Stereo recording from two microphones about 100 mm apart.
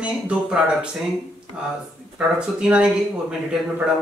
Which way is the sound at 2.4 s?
10° right (ahead or behind).